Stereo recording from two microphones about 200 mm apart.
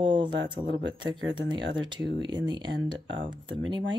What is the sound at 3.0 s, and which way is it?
Speech, 65° right (ahead or behind).